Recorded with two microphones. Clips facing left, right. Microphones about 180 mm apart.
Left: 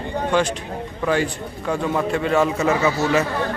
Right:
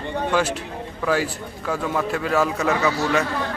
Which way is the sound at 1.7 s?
Centre (ahead or behind).